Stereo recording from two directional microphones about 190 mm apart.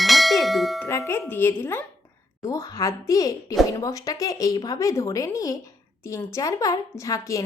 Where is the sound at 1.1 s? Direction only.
10° left (ahead or behind).